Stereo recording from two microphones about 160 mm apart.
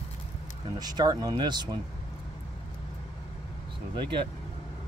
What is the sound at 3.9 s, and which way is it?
Speech, 30° right (ahead or behind).